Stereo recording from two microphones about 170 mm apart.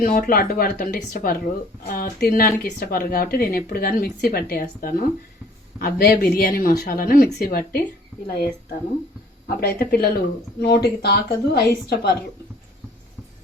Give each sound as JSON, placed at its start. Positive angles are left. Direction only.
{"t": 0.0, "sound": "speech", "side_deg": 55}
{"t": 9.6, "sound": "speech", "side_deg": 65}
{"t": 10.6, "sound": "a woman's voice", "side_deg": 75}